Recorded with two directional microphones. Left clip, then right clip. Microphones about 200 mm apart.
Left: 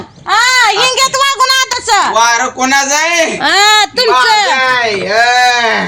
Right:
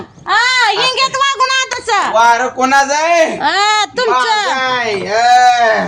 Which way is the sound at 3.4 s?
30° left (ahead or behind).